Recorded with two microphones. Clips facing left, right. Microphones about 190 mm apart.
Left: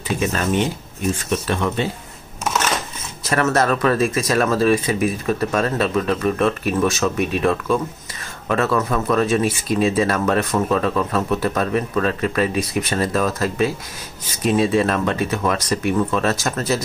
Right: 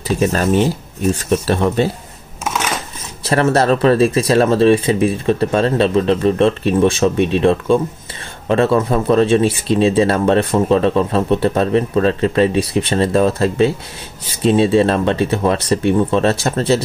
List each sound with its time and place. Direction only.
0.2 s speech: 35° right (ahead or behind)
2.4 s crushing: 5° right (ahead or behind)
3.3 s speech: 30° right (ahead or behind)